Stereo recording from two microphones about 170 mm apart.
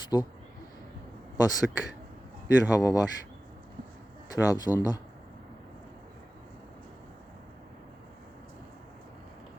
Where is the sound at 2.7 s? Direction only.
20° left (ahead or behind).